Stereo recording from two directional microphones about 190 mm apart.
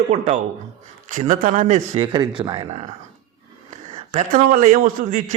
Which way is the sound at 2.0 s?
25° right (ahead or behind).